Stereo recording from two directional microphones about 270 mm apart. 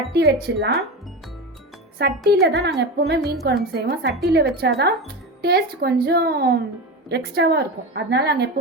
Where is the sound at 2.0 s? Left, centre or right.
Right.